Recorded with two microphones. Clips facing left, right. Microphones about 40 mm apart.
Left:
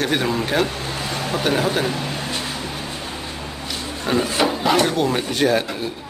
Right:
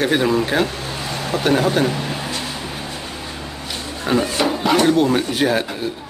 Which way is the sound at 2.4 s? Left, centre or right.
Centre.